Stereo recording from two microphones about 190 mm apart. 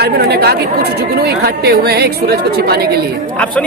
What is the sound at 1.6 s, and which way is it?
Speech, 60° right (ahead or behind).